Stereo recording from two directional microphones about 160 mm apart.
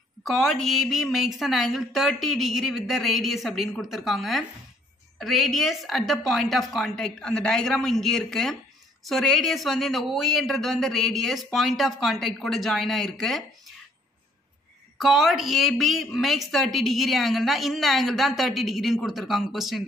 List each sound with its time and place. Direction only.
0.2 s speech: centre (ahead or behind)
15.0 s speech: centre (ahead or behind)